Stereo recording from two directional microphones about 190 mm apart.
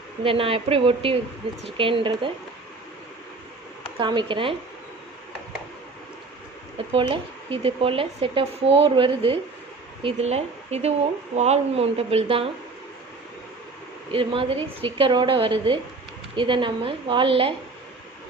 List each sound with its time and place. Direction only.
0.2 s speech: 30° right (ahead or behind)
3.9 s speech: 25° right (ahead or behind)
6.7 s speech: 30° right (ahead or behind)
14.1 s speech: 30° right (ahead or behind)